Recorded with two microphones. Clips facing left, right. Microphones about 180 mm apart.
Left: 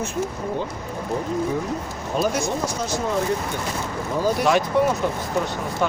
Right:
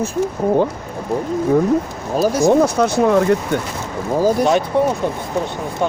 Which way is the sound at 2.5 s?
60° right (ahead or behind).